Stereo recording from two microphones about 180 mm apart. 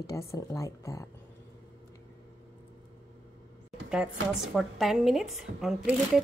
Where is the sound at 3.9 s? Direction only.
5° right (ahead or behind).